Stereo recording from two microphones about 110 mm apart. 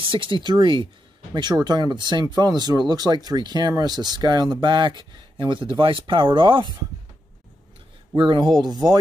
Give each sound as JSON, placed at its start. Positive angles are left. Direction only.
{"t": 0.0, "sound": "speech", "side_deg": -50}
{"t": 8.1, "sound": "speech", "side_deg": -45}